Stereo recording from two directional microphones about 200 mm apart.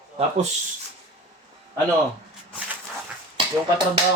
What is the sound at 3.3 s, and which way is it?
Speech, 25° right (ahead or behind).